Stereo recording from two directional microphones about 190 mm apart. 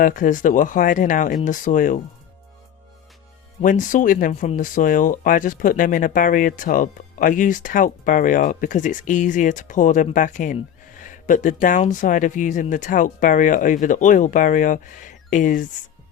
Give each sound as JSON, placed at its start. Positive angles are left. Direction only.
{"t": 0.0, "sound": "speech", "side_deg": 45}
{"t": 3.6, "sound": "speech", "side_deg": 45}
{"t": 11.0, "sound": "a sound", "side_deg": 40}
{"t": 11.6, "sound": "speech", "side_deg": 40}